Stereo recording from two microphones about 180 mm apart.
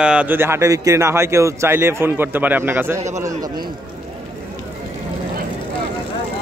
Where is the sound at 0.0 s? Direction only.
5° right (ahead or behind).